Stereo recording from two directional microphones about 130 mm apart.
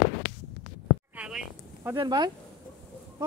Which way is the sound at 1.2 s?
5° right (ahead or behind).